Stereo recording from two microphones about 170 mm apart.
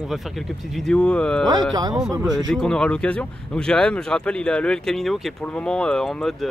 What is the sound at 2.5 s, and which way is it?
Speech, centre (ahead or behind).